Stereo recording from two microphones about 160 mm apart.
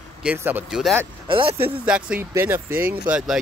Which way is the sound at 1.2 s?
35° right (ahead or behind).